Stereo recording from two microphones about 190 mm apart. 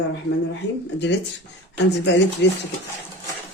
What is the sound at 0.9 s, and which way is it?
Speech, 65° left (ahead or behind).